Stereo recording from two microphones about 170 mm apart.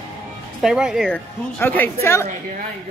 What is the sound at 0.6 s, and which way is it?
Speech, 5° right (ahead or behind).